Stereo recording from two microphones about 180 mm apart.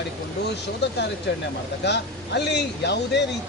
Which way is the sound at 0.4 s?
70° left (ahead or behind).